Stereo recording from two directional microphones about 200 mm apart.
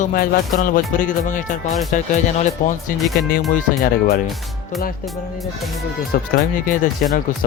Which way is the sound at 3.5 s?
45° left (ahead or behind).